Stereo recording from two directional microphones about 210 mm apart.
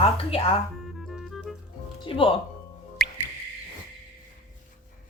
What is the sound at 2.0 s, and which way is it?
Speech, 25° left (ahead or behind).